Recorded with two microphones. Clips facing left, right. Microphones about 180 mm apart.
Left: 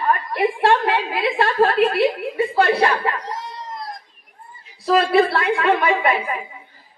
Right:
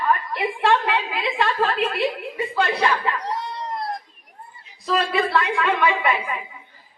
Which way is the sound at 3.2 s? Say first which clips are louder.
Right 3 dB; 65° right (ahead or behind).